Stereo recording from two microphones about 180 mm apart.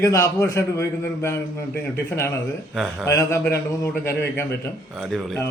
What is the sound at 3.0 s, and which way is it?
A man's voice, 15° left (ahead or behind).